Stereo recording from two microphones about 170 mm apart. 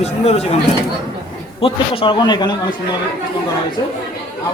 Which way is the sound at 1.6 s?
30° left (ahead or behind).